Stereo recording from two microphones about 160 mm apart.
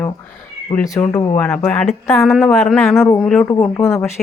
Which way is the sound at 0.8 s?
20° left (ahead or behind).